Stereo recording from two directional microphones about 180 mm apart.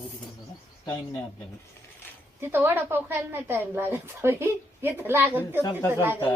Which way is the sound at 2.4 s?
10° right (ahead or behind).